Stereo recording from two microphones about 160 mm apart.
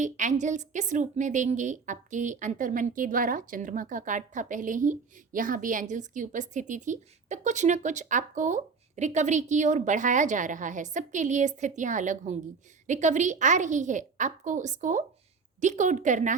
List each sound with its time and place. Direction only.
0.0 s a woman's voice: 50° right (ahead or behind)